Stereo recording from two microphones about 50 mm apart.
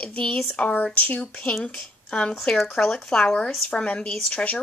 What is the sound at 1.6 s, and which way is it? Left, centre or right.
Speech, centre.